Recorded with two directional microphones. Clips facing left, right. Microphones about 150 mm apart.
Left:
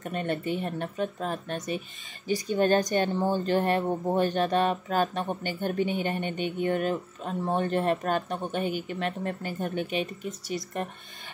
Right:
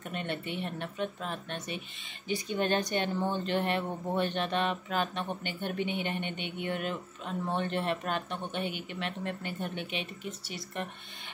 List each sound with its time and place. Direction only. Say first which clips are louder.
0.0 s speech: left 6 dB; 40° left (ahead or behind)